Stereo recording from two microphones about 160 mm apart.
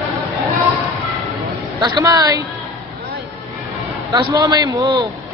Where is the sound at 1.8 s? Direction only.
25° right (ahead or behind).